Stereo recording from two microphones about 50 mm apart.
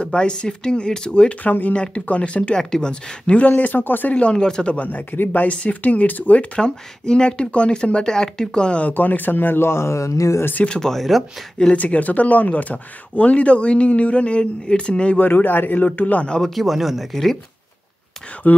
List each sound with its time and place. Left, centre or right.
0.0 s speech: centre
1.4 s speech: left
1.8 s speech: left
4.1 s speech: left
9.7 s speech: left
10.7 s speech: centre
11.7 s speech: left
15.1 s speech: left
16.3 s speech: centre
16.5 s speech: centre